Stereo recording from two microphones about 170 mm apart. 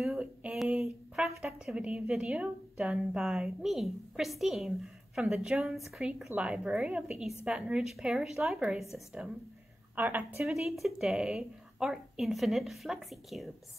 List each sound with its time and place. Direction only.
0.0 s a woman's voice: 5° right (ahead or behind)